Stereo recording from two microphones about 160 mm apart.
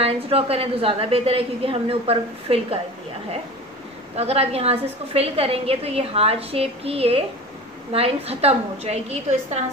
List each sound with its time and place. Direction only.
0.0 s a woman's voice: 40° right (ahead or behind)
4.2 s a woman's voice: 40° right (ahead or behind)